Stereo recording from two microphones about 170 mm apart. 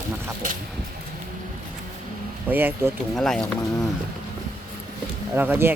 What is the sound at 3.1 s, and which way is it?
Speech, 5° left (ahead or behind).